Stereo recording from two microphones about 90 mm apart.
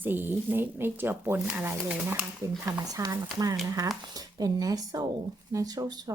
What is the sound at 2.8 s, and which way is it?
Speech, 45° right (ahead or behind).